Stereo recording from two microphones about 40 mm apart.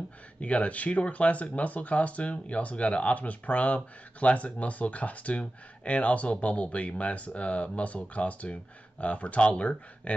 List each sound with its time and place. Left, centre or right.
0.4 s speech: left